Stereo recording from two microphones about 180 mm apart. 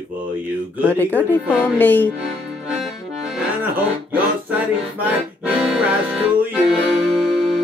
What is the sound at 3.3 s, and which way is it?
Music, 10° right (ahead or behind).